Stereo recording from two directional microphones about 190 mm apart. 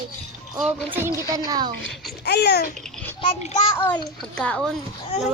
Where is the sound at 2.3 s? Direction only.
60° left (ahead or behind).